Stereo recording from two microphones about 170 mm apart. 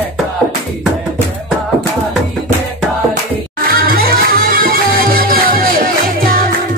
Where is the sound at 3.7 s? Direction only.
60° right (ahead or behind).